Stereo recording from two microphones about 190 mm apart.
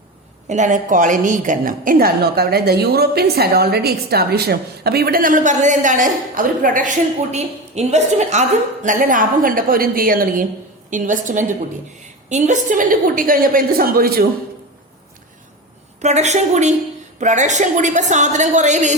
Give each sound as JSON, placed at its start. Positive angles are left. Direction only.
{"t": 0.4, "sound": "a woman's voice", "side_deg": -40}
{"t": 16.0, "sound": "a woman's voice", "side_deg": -35}